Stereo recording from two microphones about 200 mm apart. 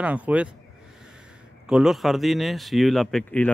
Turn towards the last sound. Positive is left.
turn(degrees=5)  # may be behind; listen again after turning